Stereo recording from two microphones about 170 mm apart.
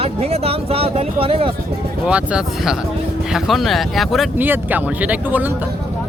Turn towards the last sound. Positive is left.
turn(degrees=-10)  # may be behind; listen again after turning